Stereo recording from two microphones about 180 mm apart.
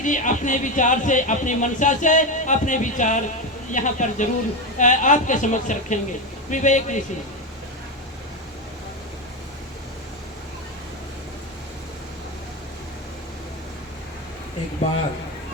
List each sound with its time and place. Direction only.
0.0 s speech: 45° left (ahead or behind)